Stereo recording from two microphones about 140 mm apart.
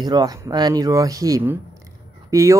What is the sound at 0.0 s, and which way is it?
Speech, 30° right (ahead or behind).